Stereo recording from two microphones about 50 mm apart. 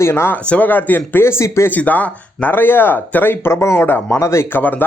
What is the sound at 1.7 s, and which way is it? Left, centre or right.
Speech, left.